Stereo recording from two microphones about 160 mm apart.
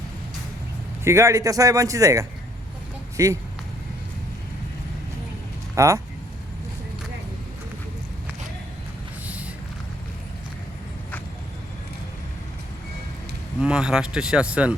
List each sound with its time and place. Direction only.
1.0 s speech: 20° right (ahead or behind)
5.7 s speech: 20° right (ahead or behind)
9.2 s vehicle: 10° right (ahead or behind)
13.6 s speech: 5° right (ahead or behind)